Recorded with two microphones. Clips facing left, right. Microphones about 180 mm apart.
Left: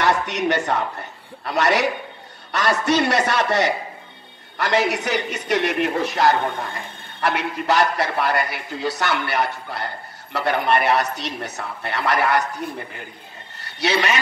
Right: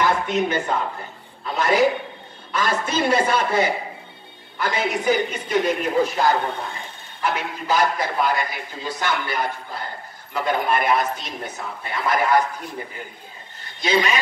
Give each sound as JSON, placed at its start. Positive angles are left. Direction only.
{"t": 0.0, "sound": "a man's voice", "side_deg": 75}
{"t": 13.7, "sound": "a man's voice", "side_deg": 75}